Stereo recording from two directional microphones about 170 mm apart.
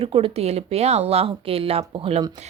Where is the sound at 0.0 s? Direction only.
35° right (ahead or behind).